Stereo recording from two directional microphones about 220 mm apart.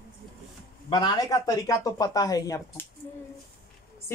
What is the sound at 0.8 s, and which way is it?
Speech, 20° left (ahead or behind).